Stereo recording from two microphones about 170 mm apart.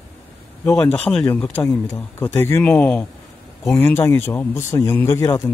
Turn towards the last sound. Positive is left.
turn(degrees=20)  # may be behind; listen again after turning